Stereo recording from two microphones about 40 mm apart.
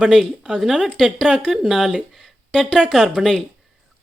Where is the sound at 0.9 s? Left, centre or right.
Centre.